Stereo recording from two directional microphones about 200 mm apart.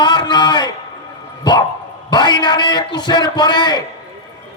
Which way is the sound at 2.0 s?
20° left (ahead or behind).